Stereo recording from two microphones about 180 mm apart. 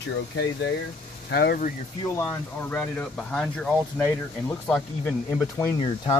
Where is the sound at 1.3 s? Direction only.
60° left (ahead or behind).